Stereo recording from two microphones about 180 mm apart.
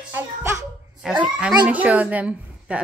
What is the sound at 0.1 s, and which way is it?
Music, 15° right (ahead or behind).